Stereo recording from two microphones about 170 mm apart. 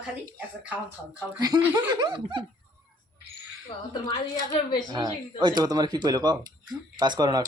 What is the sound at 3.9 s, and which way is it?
Speech, 25° left (ahead or behind).